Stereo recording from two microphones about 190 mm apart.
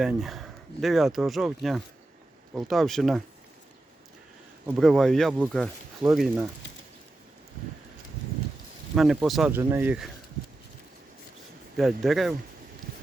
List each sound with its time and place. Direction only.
0.0 s speech: 5° right (ahead or behind)
4.6 s speech: centre (ahead or behind)
9.0 s speech: centre (ahead or behind)
9.5 s speech: 15° right (ahead or behind)
11.8 s speech: centre (ahead or behind)